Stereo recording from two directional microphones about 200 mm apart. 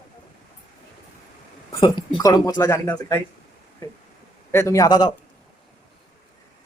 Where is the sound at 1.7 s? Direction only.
25° left (ahead or behind).